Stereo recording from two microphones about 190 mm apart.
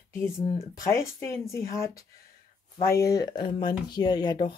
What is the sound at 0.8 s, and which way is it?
Speech, 15° left (ahead or behind).